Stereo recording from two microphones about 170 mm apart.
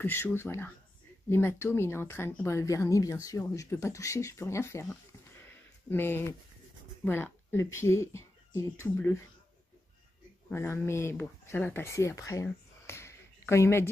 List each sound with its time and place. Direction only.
0.0 s speech: 15° left (ahead or behind)
5.4 s a sound: 15° left (ahead or behind)
7.1 s speech: 15° left (ahead or behind)
10.5 s speech: 15° left (ahead or behind)